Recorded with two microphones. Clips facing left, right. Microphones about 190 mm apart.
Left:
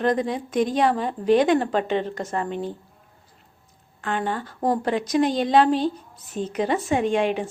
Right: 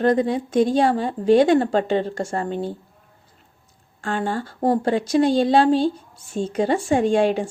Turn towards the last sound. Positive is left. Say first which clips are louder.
# right 4 dB
turn(degrees=-35)  # may be behind; listen again after turning